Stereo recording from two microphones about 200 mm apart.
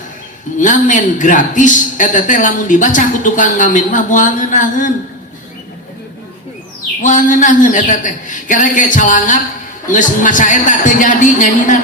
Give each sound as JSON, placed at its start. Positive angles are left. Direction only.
{"t": 0.6, "sound": "a woman's voice", "side_deg": 40}
{"t": 7.0, "sound": "a woman's voice", "side_deg": 40}